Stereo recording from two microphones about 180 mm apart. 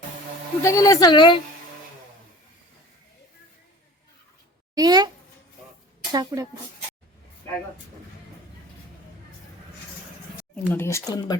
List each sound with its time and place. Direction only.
0.6 s speech: 20° left (ahead or behind)
4.7 s a woman's voice: 20° right (ahead or behind)
10.5 s speech: 10° left (ahead or behind)